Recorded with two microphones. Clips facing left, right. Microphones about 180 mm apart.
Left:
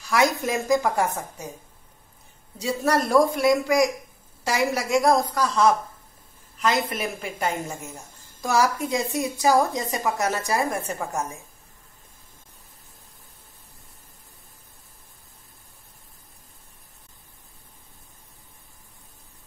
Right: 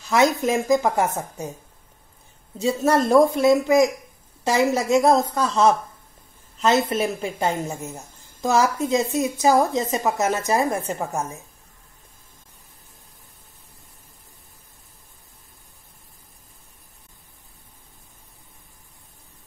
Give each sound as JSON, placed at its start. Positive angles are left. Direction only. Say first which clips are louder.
{"t": 0.0, "sound": "a woman's voice", "louder": "right 3 dB", "side_deg": -25}
{"t": 2.6, "sound": "a woman's voice", "louder": "right 4 dB", "side_deg": -25}